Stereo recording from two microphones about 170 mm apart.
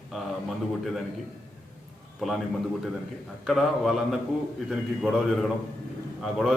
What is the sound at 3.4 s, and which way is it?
A man's voice, centre (ahead or behind).